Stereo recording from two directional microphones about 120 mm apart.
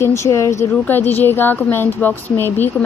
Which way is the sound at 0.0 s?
25° left (ahead or behind).